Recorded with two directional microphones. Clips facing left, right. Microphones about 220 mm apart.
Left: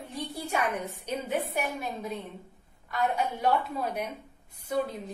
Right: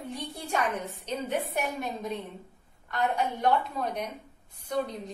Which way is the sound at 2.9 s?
5° left (ahead or behind).